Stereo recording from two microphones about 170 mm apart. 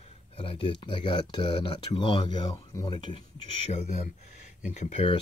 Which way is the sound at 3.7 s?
40° left (ahead or behind).